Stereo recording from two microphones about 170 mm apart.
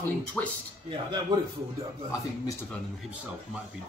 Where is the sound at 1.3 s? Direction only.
25° right (ahead or behind).